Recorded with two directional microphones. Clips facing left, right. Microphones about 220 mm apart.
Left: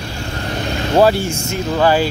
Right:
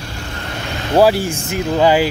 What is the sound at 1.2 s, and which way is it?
Speech, 30° right (ahead or behind).